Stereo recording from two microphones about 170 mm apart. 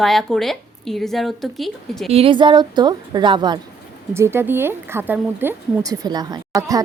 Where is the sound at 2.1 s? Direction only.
35° right (ahead or behind).